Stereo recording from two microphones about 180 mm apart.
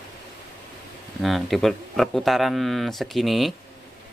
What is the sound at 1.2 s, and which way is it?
Speech, centre (ahead or behind).